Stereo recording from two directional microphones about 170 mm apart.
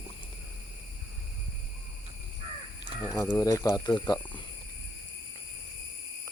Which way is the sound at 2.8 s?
20° left (ahead or behind).